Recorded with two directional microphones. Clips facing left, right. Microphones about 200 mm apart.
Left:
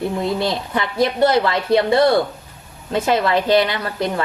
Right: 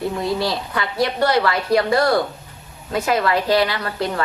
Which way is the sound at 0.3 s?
25° left (ahead or behind).